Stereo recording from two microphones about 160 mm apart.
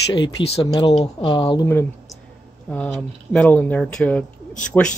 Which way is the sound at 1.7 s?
15° left (ahead or behind).